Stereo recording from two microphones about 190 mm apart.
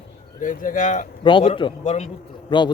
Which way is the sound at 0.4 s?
45° left (ahead or behind).